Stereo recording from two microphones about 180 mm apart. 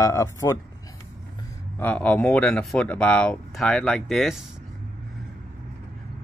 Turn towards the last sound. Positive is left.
turn(degrees=0)  # may be behind; listen again after turning